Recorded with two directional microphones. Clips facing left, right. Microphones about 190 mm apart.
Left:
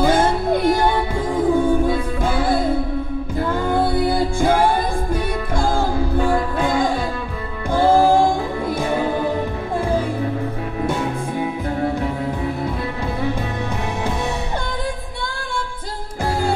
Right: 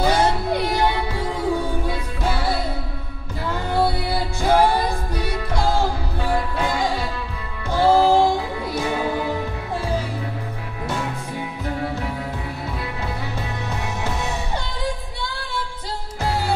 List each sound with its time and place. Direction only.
0.0 s music: 50° left (ahead or behind)